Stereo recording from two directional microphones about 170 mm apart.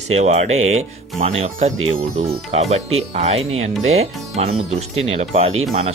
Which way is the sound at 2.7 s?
40° right (ahead or behind).